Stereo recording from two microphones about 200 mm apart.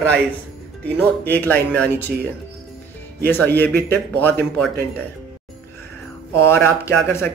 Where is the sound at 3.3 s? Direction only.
10° left (ahead or behind).